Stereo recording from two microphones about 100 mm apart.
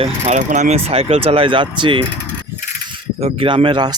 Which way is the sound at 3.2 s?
75° right (ahead or behind).